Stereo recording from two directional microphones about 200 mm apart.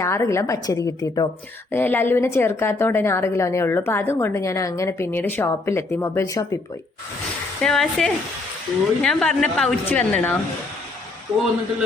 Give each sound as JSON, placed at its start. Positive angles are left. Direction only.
{"t": 0.0, "sound": "a woman's voice", "side_deg": 15}
{"t": 7.6, "sound": "a woman's voice", "side_deg": 0}